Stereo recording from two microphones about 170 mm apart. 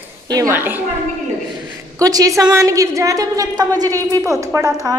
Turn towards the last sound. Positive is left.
turn(degrees=-20)  # may be behind; listen again after turning